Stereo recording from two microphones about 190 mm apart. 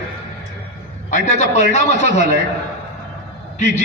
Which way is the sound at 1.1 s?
35° left (ahead or behind).